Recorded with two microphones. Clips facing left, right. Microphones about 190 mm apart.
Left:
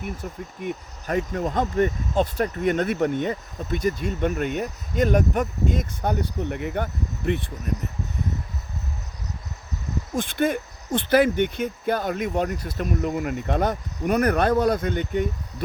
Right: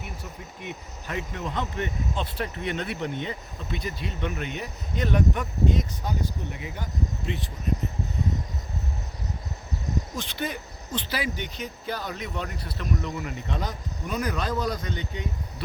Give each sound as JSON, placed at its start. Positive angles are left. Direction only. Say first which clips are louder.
{"t": 0.6, "sound": "speech", "louder": "left 8 dB", "side_deg": 45}
{"t": 10.2, "sound": "speech", "louder": "left 9 dB", "side_deg": 50}